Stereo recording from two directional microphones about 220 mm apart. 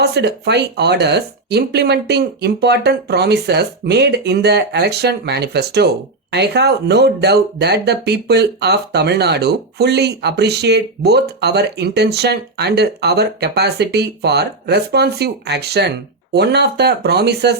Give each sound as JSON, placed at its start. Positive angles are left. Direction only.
{"t": 0.0, "sound": "speech", "side_deg": -50}